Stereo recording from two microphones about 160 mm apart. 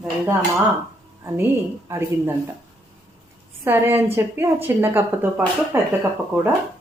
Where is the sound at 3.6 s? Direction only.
15° right (ahead or behind).